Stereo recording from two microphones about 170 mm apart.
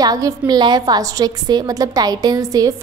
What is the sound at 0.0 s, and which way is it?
A woman's voice, 20° right (ahead or behind).